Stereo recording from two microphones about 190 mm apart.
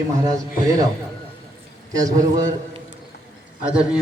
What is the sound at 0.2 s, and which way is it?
Speech, 20° right (ahead or behind).